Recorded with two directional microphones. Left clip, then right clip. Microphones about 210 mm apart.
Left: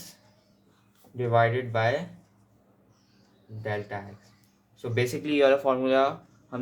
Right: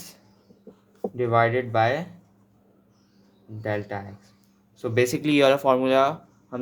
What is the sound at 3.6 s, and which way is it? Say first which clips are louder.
Speech: right 4 dB; 50° right (ahead or behind).